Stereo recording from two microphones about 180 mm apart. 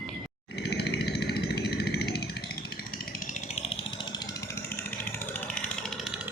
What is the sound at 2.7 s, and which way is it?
Chainsaw, 55° left (ahead or behind).